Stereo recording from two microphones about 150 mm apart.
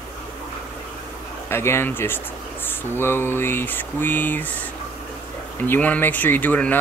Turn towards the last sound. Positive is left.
turn(degrees=10)  # may be behind; listen again after turning